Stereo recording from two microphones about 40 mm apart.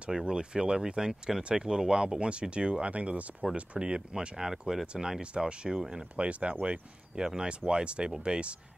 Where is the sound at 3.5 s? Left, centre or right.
Right.